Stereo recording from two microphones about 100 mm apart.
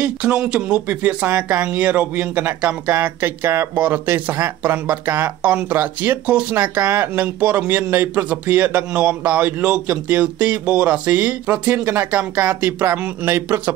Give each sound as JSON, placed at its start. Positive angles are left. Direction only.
{"t": 0.0, "sound": "speech", "side_deg": -15}